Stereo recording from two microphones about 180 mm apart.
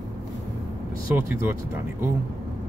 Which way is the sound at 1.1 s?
10° right (ahead or behind).